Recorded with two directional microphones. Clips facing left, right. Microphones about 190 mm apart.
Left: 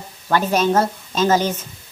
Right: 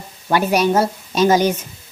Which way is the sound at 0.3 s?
10° right (ahead or behind).